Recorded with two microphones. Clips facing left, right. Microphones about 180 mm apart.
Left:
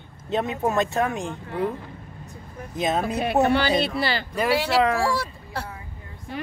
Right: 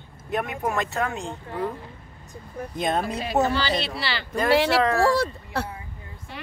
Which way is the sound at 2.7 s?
5° left (ahead or behind).